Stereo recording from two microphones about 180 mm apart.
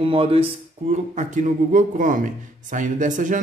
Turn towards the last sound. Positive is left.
turn(degrees=-45)  # may be behind; listen again after turning